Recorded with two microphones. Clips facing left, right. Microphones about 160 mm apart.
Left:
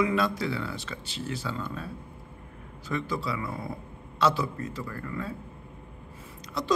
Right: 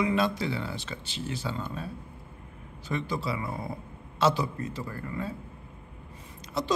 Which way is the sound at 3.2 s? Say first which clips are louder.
Even; 25° right (ahead or behind).